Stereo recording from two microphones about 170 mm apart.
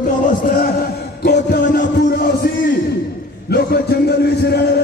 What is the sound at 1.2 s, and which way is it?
Music, 75° left (ahead or behind).